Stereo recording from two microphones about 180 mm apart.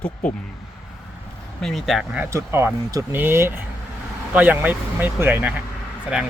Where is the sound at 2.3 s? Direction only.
15° right (ahead or behind).